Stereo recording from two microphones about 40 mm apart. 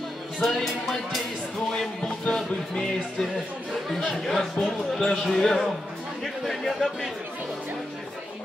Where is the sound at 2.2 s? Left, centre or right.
Centre.